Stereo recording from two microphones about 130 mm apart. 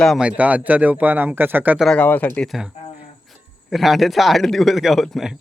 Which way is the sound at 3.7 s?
Centre (ahead or behind).